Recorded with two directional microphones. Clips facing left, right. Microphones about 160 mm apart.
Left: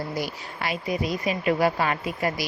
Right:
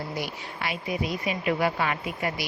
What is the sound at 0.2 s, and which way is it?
Speech, 40° left (ahead or behind).